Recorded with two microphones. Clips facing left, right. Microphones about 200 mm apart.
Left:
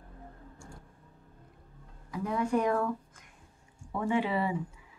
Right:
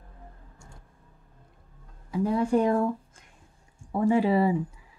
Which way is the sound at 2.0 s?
30° right (ahead or behind).